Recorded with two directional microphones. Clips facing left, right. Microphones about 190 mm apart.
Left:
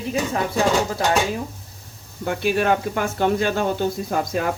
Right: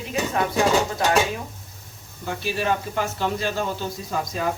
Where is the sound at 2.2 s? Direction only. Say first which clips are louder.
Left 5 dB; 60° left (ahead or behind).